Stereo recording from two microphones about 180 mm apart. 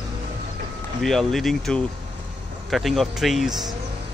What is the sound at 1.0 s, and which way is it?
Speech, centre (ahead or behind).